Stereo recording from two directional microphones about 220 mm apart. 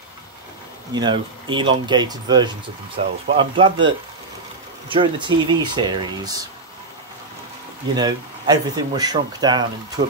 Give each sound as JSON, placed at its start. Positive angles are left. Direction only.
{"t": 0.9, "sound": "speech", "side_deg": -20}
{"t": 4.8, "sound": "speech", "side_deg": -20}
{"t": 7.9, "sound": "speech", "side_deg": -20}